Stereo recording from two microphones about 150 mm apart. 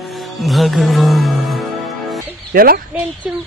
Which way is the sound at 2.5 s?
75° right (ahead or behind).